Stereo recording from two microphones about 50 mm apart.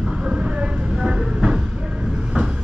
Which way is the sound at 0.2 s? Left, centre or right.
Centre.